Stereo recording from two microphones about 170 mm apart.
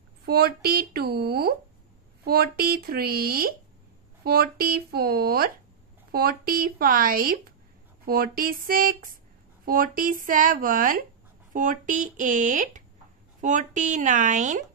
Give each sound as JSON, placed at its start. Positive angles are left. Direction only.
{"t": 0.2, "sound": "speech", "side_deg": -65}